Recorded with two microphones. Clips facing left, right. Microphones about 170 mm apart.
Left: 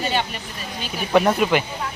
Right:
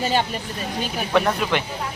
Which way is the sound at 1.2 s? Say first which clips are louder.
Left 4 dB; 5° left (ahead or behind).